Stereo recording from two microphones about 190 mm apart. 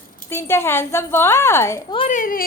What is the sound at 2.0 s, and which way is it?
Speech, 45° left (ahead or behind).